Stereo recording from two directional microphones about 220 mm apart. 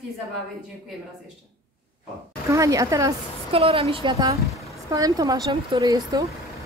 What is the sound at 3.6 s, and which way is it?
A woman's voice, 25° right (ahead or behind).